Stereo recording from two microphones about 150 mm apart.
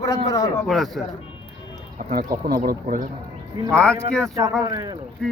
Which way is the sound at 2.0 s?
70° right (ahead or behind).